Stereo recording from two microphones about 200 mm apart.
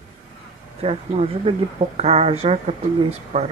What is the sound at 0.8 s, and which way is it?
Speech, 30° right (ahead or behind).